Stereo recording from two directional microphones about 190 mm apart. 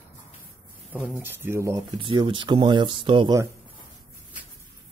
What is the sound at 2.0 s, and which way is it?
Speech, 25° right (ahead or behind).